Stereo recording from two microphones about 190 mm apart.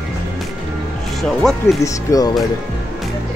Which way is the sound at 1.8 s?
20° left (ahead or behind).